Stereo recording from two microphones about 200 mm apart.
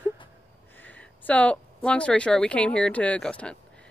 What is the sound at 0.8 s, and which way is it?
Speech, 10° left (ahead or behind).